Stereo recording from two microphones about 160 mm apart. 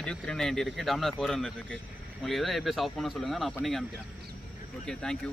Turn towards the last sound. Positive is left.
turn(degrees=5)  # may be behind; listen again after turning